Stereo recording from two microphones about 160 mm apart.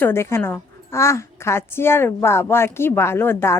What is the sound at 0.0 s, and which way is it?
A woman's voice, 15° left (ahead or behind).